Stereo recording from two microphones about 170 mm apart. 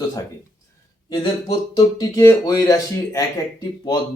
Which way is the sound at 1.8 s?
20° left (ahead or behind).